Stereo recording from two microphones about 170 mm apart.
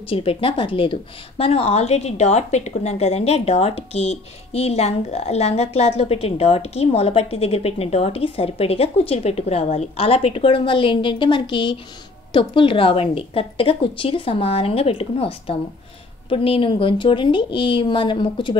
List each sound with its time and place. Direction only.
0.1 s a woman's voice: 35° left (ahead or behind)